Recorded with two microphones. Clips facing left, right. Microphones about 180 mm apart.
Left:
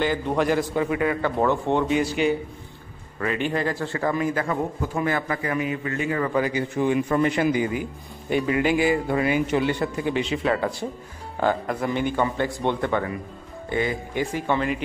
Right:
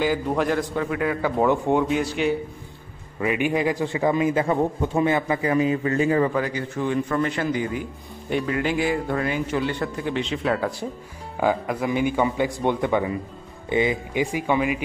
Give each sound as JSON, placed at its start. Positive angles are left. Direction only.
{"t": 0.0, "sound": "a man's voice", "side_deg": -5}
{"t": 3.2, "sound": "a man's voice", "side_deg": -10}
{"t": 6.3, "sound": "a man's voice", "side_deg": 5}
{"t": 6.8, "sound": "a man's voice", "side_deg": 15}